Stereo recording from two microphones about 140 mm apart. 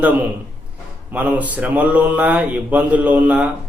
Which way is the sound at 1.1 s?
10° right (ahead or behind).